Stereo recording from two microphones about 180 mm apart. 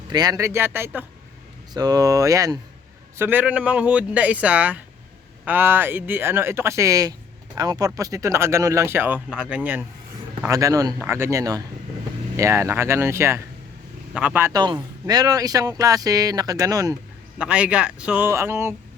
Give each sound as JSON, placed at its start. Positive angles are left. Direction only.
{"t": 0.1, "sound": "a man's voice", "side_deg": -20}
{"t": 10.4, "sound": "a man's voice", "side_deg": -20}
{"t": 17.3, "sound": "speech", "side_deg": -5}